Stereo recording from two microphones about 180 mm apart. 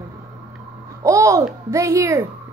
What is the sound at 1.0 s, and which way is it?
A child's voice, 15° right (ahead or behind).